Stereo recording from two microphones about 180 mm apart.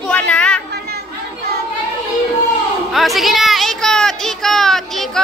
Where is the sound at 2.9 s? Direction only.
Centre (ahead or behind).